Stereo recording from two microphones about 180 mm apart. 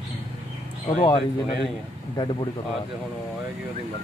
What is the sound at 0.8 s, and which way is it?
Speech, 30° left (ahead or behind).